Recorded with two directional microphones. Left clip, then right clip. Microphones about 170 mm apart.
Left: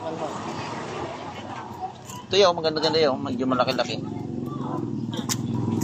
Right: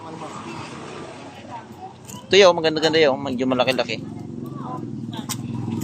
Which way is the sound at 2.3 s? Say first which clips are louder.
Right 5 dB; 65° right (ahead or behind).